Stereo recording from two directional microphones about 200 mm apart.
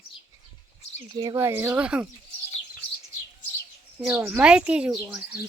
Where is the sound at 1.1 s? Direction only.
20° right (ahead or behind).